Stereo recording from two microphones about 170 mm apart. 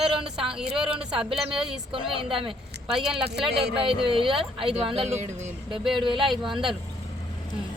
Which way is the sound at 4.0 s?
30° right (ahead or behind).